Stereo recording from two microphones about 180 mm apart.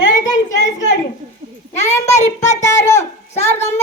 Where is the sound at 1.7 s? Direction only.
40° left (ahead or behind).